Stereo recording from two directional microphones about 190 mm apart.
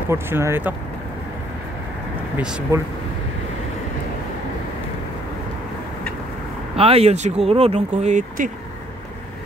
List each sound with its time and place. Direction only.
0.1 s speech: 15° right (ahead or behind)
2.3 s speech: 5° right (ahead or behind)
6.8 s speech: 30° right (ahead or behind)